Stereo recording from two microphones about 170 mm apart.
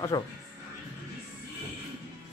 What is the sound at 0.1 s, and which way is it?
Speech, 20° left (ahead or behind).